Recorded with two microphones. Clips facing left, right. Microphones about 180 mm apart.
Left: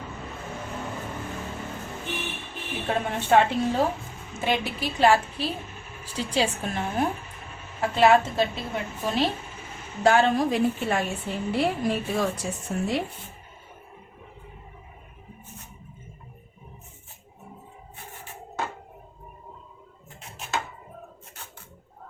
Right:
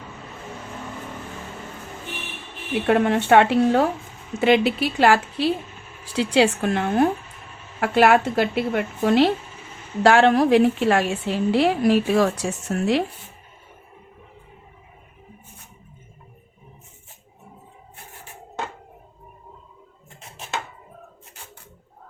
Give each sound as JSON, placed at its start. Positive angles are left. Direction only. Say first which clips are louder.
{"t": 2.8, "sound": "a woman's voice", "louder": "right 9 dB", "side_deg": -75}